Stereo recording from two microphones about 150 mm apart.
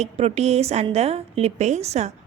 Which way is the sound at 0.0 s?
45° right (ahead or behind).